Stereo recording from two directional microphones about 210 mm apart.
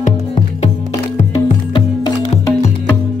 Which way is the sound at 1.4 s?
25° left (ahead or behind).